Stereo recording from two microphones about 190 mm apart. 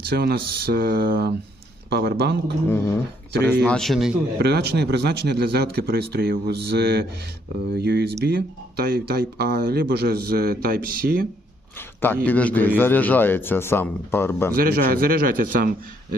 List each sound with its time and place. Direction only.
0.0 s speech: 55° right (ahead or behind)
2.6 s a man's voice: 15° left (ahead or behind)
3.7 s speech: centre (ahead or behind)
4.4 s speech: 60° right (ahead or behind)
12.2 s a man's voice: 10° left (ahead or behind)
14.5 s speech: 50° right (ahead or behind)